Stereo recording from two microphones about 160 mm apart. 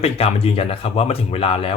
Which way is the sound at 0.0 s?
40° left (ahead or behind).